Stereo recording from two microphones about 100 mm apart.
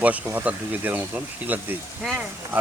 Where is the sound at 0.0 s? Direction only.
15° right (ahead or behind).